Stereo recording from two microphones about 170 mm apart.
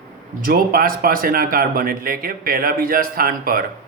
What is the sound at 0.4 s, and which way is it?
A man's voice, 55° right (ahead or behind).